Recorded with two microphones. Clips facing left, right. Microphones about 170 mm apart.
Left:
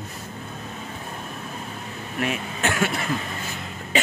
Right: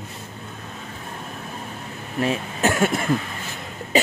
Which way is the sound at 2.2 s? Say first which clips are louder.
Right 4 dB; 35° right (ahead or behind).